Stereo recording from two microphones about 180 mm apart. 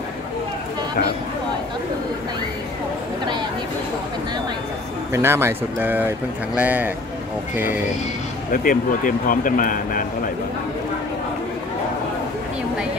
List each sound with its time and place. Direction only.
5.1 s speech: 15° right (ahead or behind)
8.5 s speech: 50° left (ahead or behind)